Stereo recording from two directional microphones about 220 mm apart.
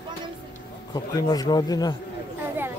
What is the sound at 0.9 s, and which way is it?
A man's voice, 20° left (ahead or behind).